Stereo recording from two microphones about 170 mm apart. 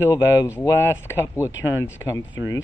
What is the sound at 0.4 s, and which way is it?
Speech, 20° left (ahead or behind).